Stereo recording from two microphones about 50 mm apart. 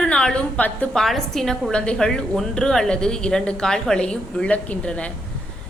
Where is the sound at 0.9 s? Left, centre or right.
Centre.